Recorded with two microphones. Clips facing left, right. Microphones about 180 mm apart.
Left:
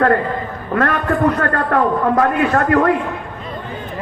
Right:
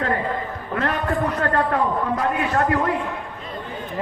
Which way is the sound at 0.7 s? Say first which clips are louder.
Left 6 dB; 60° left (ahead or behind).